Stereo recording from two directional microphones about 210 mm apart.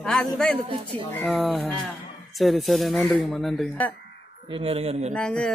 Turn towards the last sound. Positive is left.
turn(degrees=5)  # may be behind; listen again after turning